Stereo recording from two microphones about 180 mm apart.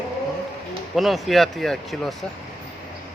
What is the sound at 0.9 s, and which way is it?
Speech, centre (ahead or behind).